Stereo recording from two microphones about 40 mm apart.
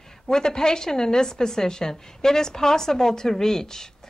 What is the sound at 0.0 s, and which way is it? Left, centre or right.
A woman's voice, centre.